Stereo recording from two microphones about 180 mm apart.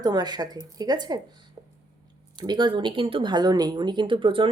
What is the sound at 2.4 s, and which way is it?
Speech, 25° right (ahead or behind).